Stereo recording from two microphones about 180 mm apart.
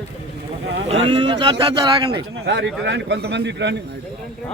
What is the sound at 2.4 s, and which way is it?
A man's voice, 75° right (ahead or behind).